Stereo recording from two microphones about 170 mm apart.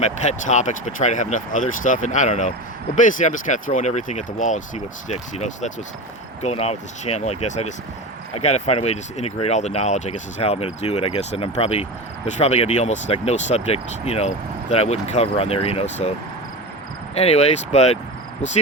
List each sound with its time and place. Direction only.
0.0 s speech: 45° left (ahead or behind)
17.2 s speech: 40° left (ahead or behind)